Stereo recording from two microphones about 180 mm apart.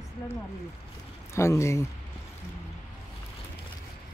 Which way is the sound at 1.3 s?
15° left (ahead or behind).